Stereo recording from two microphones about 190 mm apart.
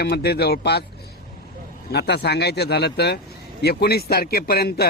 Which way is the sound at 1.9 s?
60° left (ahead or behind).